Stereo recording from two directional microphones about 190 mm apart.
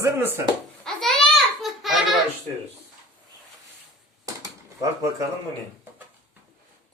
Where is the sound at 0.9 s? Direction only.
5° left (ahead or behind).